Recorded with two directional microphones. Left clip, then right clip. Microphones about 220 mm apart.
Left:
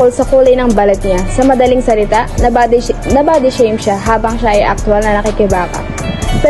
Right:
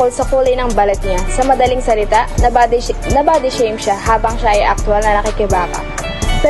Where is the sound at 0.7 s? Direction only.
15° right (ahead or behind).